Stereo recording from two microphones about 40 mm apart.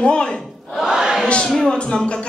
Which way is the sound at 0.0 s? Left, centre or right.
Left.